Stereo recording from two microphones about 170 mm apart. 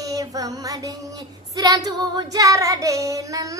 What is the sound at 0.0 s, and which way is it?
Child singing, 20° right (ahead or behind).